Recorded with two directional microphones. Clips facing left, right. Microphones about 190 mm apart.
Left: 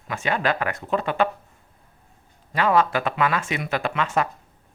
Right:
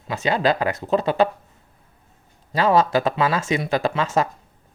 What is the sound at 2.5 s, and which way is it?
Speech, 35° right (ahead or behind).